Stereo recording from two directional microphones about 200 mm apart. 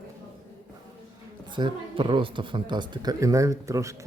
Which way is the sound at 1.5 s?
25° right (ahead or behind).